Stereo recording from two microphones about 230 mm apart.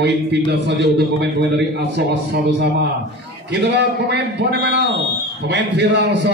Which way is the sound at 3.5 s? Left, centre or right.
Right.